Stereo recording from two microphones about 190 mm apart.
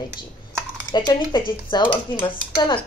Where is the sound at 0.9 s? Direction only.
25° left (ahead or behind).